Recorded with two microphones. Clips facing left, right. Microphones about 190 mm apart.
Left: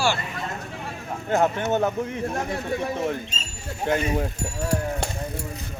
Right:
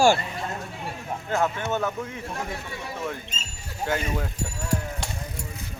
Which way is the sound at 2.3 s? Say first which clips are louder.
Left 7 dB; 45° left (ahead or behind).